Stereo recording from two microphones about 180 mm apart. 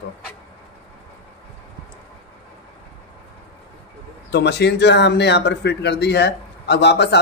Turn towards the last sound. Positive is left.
turn(degrees=70)  # may be behind; listen again after turning